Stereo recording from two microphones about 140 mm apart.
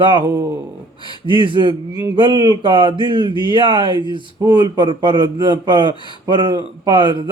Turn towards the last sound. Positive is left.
turn(degrees=-35)  # may be behind; listen again after turning